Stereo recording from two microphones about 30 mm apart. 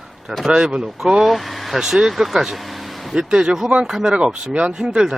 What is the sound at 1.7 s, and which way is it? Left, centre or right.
Speech, centre.